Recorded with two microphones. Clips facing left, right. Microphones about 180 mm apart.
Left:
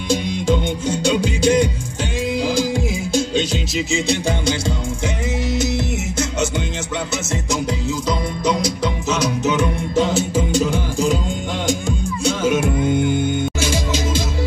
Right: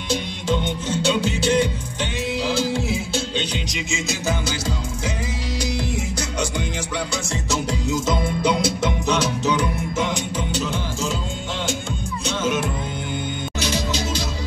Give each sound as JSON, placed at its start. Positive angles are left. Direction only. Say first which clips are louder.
{"t": 0.1, "sound": "music", "louder": "left 5 dB", "side_deg": 10}
{"t": 3.9, "sound": "music", "louder": "left 4 dB", "side_deg": 30}
{"t": 9.4, "sound": "music", "louder": "left 3 dB", "side_deg": 20}
{"t": 10.1, "sound": "music", "louder": "left 7 dB", "side_deg": 10}
{"t": 13.6, "sound": "music", "louder": "left 3 dB", "side_deg": 50}